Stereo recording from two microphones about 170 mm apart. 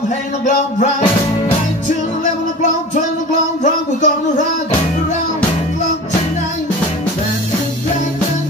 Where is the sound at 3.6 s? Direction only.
45° left (ahead or behind).